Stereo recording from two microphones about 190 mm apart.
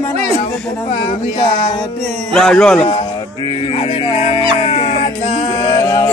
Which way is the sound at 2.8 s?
25° left (ahead or behind).